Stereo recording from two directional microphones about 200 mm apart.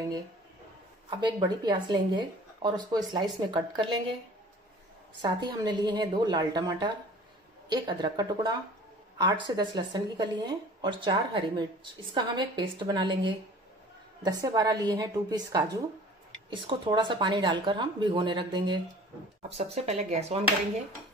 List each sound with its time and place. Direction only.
1.2 s speech: 20° right (ahead or behind)
5.2 s speech: 20° right (ahead or behind)